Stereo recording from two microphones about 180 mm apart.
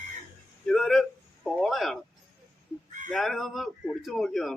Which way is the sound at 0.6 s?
Centre (ahead or behind).